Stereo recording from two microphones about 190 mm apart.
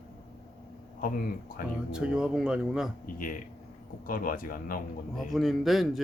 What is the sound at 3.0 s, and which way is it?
Speech, 50° left (ahead or behind).